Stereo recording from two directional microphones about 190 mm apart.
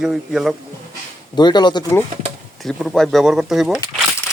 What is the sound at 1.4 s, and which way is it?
Speech, 20° left (ahead or behind).